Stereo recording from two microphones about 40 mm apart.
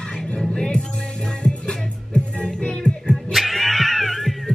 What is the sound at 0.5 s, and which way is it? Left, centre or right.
Music, centre.